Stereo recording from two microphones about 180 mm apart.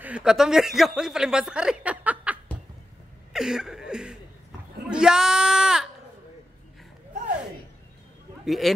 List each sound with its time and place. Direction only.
0.0 s speech: 5° right (ahead or behind)
3.3 s a sound: 5° right (ahead or behind)
8.5 s speech: centre (ahead or behind)